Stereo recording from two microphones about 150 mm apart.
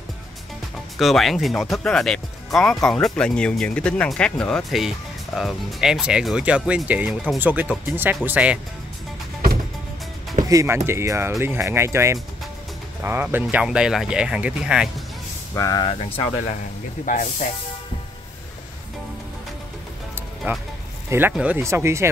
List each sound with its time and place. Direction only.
0.9 s speech: centre (ahead or behind)
10.5 s speech: 20° right (ahead or behind)
15.5 s speech: 25° left (ahead or behind); by 16.5 s 40° left (ahead or behind)
17.0 s speech: 60° left (ahead or behind)
20.5 s speech: 15° right (ahead or behind)